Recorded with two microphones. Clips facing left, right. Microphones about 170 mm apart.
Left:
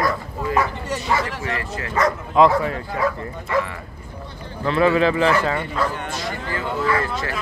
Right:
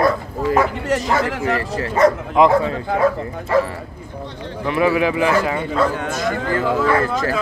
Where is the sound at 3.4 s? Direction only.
35° right (ahead or behind).